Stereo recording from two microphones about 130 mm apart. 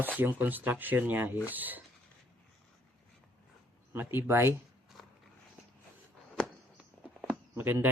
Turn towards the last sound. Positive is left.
turn(degrees=-15)  # may be behind; listen again after turning